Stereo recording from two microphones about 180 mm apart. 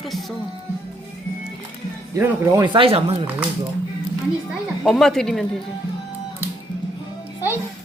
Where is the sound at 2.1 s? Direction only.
15° right (ahead or behind).